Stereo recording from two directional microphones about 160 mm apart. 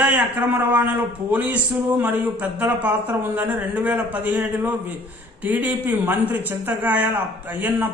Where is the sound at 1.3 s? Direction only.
10° right (ahead or behind).